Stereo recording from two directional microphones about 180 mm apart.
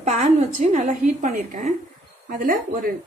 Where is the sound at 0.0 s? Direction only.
40° right (ahead or behind).